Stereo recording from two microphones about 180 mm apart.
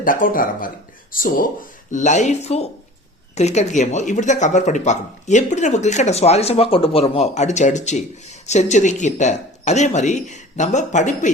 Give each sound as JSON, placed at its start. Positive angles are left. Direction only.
{"t": 0.0, "sound": "speech", "side_deg": 50}